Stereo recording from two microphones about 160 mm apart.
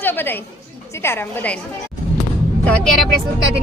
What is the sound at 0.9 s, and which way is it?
Speech, 15° left (ahead or behind).